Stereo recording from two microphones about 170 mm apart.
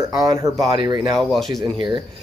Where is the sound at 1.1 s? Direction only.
Centre (ahead or behind).